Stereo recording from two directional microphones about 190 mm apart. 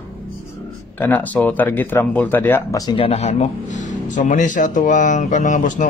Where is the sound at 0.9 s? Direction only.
10° left (ahead or behind).